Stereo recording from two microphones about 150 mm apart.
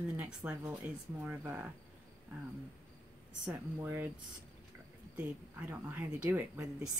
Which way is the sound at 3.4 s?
15° right (ahead or behind).